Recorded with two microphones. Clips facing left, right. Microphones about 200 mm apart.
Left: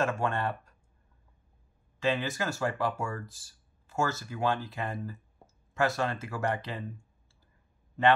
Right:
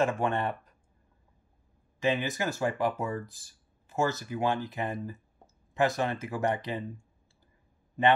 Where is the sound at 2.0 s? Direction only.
15° right (ahead or behind).